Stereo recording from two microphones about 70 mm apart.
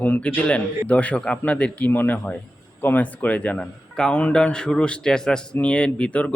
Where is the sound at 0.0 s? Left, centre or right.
Left.